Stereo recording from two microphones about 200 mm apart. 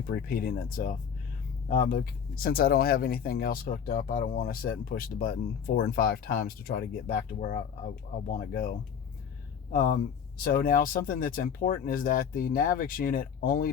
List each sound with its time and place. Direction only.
0.1 s speech: 45° left (ahead or behind)
9.7 s speech: 40° left (ahead or behind)